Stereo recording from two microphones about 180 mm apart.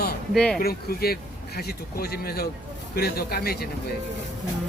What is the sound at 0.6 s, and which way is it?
Speech, 60° left (ahead or behind).